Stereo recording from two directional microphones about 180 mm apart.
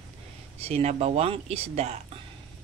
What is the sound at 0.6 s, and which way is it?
Speech, 35° right (ahead or behind).